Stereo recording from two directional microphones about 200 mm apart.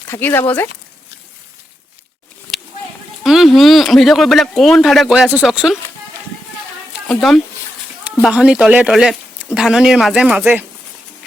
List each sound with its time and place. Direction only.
0.1 s speech: 10° left (ahead or behind)
3.2 s speech: centre (ahead or behind)
7.1 s speech: centre (ahead or behind)